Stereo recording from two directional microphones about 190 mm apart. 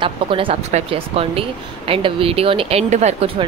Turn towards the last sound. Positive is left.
turn(degrees=-35)  # may be behind; listen again after turning